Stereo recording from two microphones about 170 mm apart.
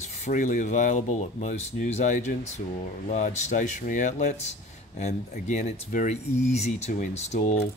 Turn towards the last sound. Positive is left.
turn(degrees=40)  # may be behind; listen again after turning